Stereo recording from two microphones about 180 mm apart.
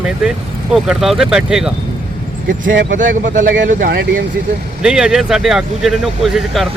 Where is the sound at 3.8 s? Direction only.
70° right (ahead or behind).